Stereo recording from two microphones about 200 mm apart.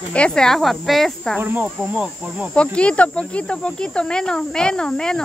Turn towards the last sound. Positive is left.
turn(degrees=5)  # may be behind; listen again after turning